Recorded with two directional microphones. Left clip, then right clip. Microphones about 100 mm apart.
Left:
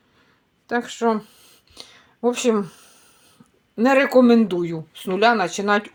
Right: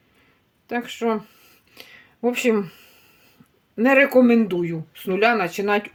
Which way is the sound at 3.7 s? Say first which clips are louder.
Even; 5° left (ahead or behind).